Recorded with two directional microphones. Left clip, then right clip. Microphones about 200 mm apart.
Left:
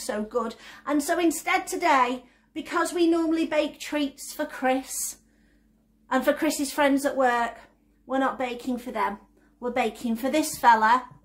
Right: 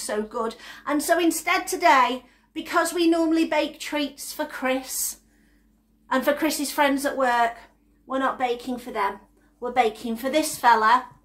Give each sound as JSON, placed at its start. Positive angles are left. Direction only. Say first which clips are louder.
{"t": 0.0, "sound": "a woman's voice", "louder": "right 1 dB", "side_deg": 20}
{"t": 6.0, "sound": "a woman's voice", "louder": "right 1 dB", "side_deg": 15}